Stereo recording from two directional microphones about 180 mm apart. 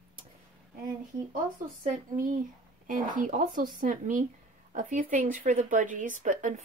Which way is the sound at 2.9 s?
50° right (ahead or behind).